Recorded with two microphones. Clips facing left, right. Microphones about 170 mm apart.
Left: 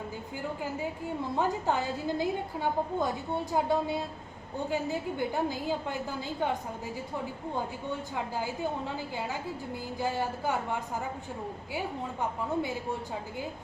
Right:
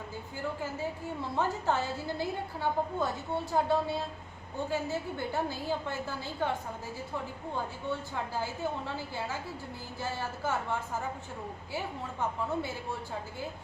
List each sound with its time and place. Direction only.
1.4 s a woman's voice: 15° left (ahead or behind)
7.9 s a woman's voice: 15° left (ahead or behind)